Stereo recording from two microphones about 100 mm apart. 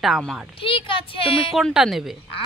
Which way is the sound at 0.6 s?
60° left (ahead or behind).